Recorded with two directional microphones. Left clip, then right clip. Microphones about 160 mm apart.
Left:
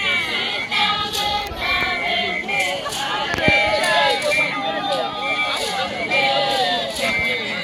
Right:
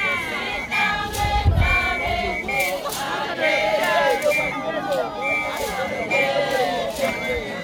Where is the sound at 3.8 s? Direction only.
15° right (ahead or behind).